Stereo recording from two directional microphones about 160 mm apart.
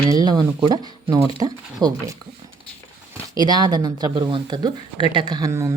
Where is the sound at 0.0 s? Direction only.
20° right (ahead or behind).